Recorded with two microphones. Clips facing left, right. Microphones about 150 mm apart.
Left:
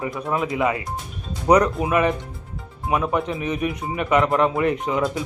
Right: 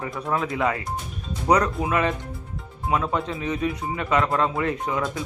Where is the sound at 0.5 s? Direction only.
15° left (ahead or behind).